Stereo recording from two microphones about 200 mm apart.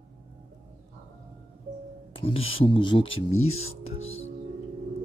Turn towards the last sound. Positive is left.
turn(degrees=90)